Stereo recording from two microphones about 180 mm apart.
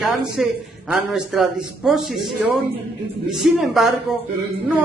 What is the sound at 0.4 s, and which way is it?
A woman's voice, 5° right (ahead or behind).